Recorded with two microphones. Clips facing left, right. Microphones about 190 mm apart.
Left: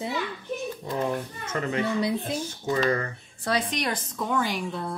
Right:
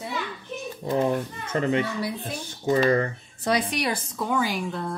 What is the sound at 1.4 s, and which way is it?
Speech, 30° right (ahead or behind).